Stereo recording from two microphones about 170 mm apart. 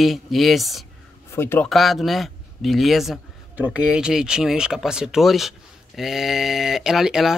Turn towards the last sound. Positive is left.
turn(degrees=0)  # may be behind; listen again after turning